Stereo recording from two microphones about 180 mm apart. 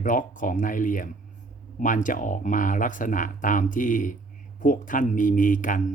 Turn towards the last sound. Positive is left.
turn(degrees=45)  # may be behind; listen again after turning